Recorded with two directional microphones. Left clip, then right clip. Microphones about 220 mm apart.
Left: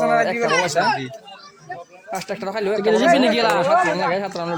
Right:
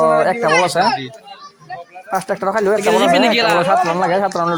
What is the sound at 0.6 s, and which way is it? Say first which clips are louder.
Speech: right 4 dB; 15° right (ahead or behind).